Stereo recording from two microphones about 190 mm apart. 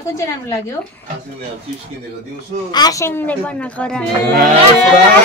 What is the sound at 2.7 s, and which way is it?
A woman's voice, 20° left (ahead or behind).